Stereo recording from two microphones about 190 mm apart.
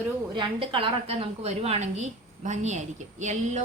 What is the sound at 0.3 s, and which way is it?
A woman's voice, 25° right (ahead or behind).